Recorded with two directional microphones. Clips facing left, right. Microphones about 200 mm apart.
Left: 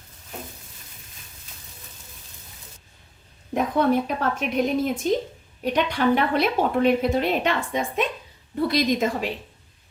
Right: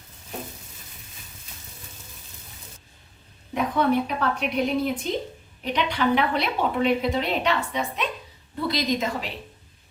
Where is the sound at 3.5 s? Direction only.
45° left (ahead or behind).